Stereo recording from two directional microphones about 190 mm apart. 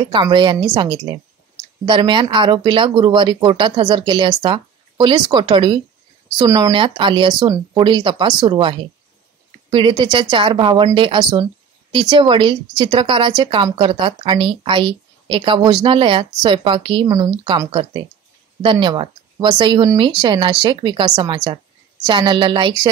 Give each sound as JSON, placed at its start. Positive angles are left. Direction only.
{"t": 0.0, "sound": "speech", "side_deg": -25}
{"t": 17.6, "sound": "speech", "side_deg": -25}